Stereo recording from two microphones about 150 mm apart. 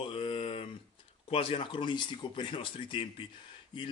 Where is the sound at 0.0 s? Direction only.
35° left (ahead or behind).